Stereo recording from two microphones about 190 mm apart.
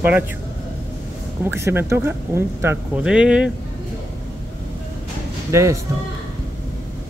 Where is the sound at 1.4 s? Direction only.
15° right (ahead or behind).